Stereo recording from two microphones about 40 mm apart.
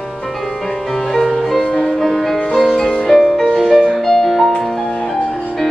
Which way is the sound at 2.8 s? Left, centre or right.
Centre.